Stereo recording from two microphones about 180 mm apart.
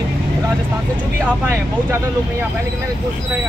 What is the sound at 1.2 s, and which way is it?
Speech, 10° right (ahead or behind).